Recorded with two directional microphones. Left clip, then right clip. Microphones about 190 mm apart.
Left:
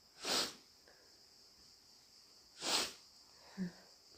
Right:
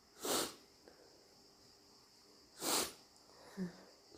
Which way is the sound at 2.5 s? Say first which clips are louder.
Left 1 dB; 20° right (ahead or behind).